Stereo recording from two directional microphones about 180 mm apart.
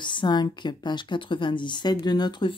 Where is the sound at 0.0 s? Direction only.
25° left (ahead or behind).